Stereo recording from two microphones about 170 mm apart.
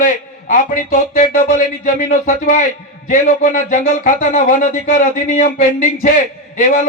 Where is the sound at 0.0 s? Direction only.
50° left (ahead or behind).